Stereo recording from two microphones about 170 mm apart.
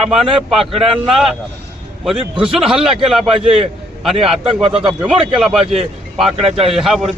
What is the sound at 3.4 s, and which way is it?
Speech, 35° right (ahead or behind).